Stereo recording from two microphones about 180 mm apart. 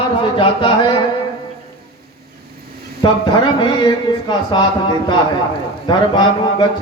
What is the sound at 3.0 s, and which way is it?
Speech, 25° left (ahead or behind).